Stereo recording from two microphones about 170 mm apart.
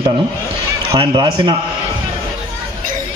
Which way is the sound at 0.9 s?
25° right (ahead or behind).